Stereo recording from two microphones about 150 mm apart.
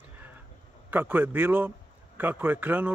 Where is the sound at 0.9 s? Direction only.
10° right (ahead or behind).